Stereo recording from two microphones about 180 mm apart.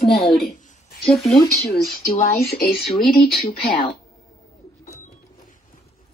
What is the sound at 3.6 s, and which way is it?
Speech, 30° left (ahead or behind).